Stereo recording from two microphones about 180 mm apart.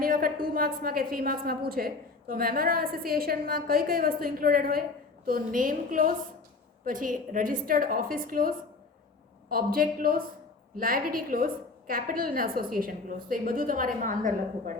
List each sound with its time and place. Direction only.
0.0 s a woman's voice: 50° right (ahead or behind)